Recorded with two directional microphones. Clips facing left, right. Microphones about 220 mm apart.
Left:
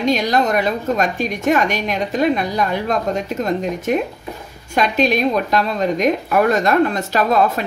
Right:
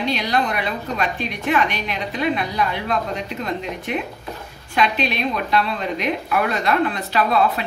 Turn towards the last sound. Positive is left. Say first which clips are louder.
# left 3 dB
turn(degrees=45)  # may be behind; listen again after turning